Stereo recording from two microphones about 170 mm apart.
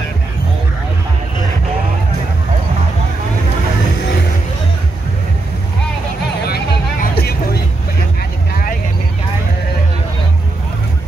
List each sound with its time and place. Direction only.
6.4 s vehicle: 70° left (ahead or behind)